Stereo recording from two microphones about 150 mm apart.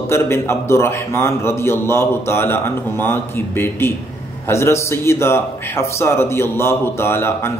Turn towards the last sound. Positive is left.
turn(degrees=15)  # may be behind; listen again after turning